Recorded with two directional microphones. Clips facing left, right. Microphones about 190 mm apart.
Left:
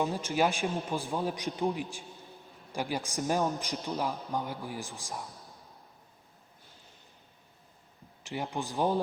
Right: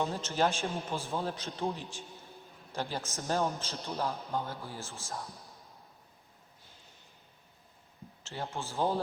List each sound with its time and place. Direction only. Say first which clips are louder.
0.0 s a man's voice: left 2 dB; 15° left (ahead or behind)
8.2 s a man's voice: left 4 dB; 15° left (ahead or behind)